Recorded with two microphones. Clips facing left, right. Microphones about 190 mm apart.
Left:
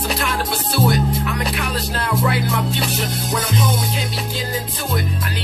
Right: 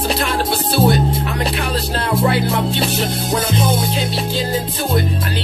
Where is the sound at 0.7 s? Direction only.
30° right (ahead or behind).